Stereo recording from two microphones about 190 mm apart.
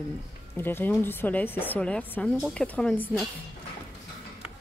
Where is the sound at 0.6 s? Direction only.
10° left (ahead or behind).